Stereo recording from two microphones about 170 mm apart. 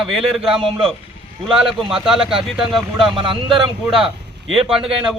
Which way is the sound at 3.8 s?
5° right (ahead or behind).